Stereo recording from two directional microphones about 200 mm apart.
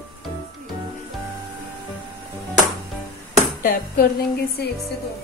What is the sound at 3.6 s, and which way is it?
A woman's voice, 50° left (ahead or behind).